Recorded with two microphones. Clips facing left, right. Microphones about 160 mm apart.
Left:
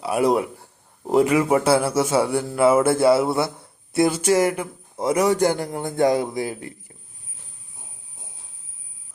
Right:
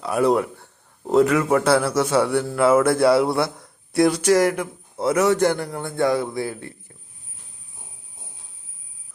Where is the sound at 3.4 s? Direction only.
30° left (ahead or behind).